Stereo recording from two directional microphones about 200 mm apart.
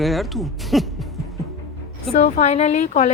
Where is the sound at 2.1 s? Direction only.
35° left (ahead or behind).